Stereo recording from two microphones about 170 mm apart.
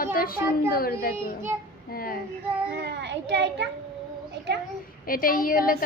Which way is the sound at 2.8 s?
90° right.